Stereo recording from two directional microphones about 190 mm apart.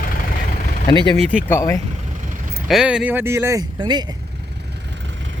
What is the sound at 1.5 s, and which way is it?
Speech, 15° left (ahead or behind).